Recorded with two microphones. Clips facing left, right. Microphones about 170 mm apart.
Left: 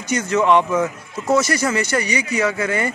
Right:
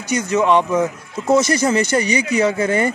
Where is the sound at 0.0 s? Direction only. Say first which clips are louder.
Right 1 dB; 15° right (ahead or behind).